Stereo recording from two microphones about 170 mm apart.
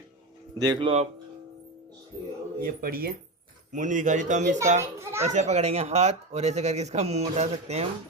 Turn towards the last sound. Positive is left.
turn(degrees=-40)  # may be behind; listen again after turning